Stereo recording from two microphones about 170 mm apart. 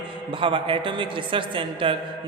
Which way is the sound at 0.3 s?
30° right (ahead or behind).